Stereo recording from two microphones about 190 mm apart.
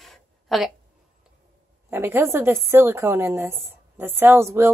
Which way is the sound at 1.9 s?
10° right (ahead or behind).